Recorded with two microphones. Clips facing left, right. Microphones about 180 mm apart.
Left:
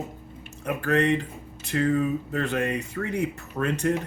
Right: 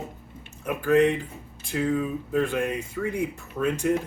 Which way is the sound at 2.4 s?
70° left (ahead or behind).